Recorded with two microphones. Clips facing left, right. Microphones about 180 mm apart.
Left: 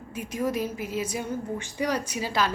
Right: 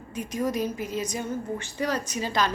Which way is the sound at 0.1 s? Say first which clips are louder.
Even; 5° left (ahead or behind).